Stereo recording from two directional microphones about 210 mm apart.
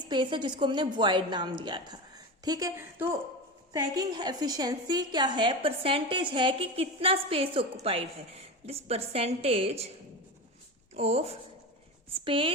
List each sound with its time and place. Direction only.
0.1 s a woman's voice: 20° right (ahead or behind)
10.9 s a woman's voice: 30° right (ahead or behind)